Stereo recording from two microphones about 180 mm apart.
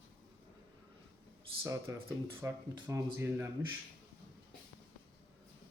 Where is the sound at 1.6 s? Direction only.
15° right (ahead or behind).